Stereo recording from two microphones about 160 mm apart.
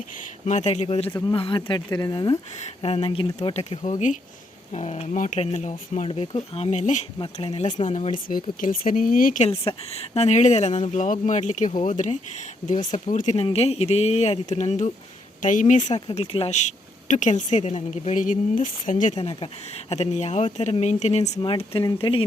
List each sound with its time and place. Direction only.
0.4 s speech: 45° left (ahead or behind); by 2.4 s 25° left (ahead or behind)
2.6 s speech: 40° left (ahead or behind)
6.1 s speech: 35° left (ahead or behind)
7.2 s speech: 35° left (ahead or behind); by 9.4 s 60° left (ahead or behind)
9.4 s speech: 40° left (ahead or behind)
16.0 s speech: 35° left (ahead or behind)